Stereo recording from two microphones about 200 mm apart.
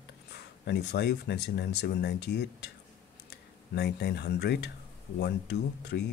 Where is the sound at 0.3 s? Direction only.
55° left (ahead or behind).